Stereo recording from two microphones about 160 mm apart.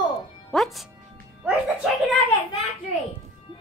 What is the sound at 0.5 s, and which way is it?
Music, centre (ahead or behind).